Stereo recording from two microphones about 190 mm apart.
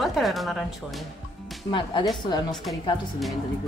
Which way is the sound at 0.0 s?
Centre (ahead or behind).